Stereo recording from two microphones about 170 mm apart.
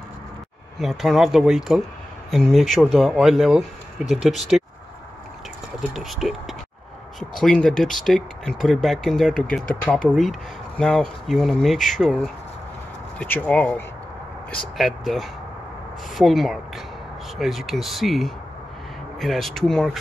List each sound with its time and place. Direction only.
0.7 s speech: centre (ahead or behind)
5.8 s speech: centre (ahead or behind)